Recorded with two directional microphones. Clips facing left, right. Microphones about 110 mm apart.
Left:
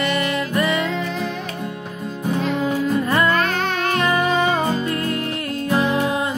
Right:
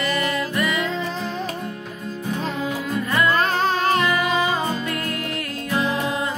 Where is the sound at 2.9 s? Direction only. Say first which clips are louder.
Even; 30° left (ahead or behind).